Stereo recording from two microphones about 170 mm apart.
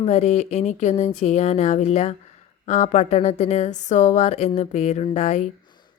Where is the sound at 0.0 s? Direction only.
45° left (ahead or behind).